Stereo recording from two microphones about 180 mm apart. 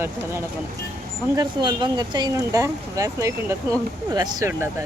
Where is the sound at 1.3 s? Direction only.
25° right (ahead or behind).